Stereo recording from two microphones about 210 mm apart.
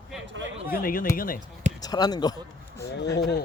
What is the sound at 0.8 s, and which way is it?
Speech, 45° left (ahead or behind).